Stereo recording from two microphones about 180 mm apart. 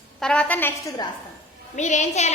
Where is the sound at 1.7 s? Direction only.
40° left (ahead or behind).